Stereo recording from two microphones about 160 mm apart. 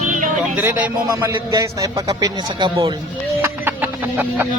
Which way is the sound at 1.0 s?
20° right (ahead or behind).